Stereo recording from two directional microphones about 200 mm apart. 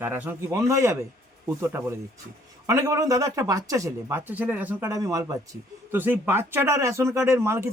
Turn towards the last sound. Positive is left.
turn(degrees=-15)  # may be behind; listen again after turning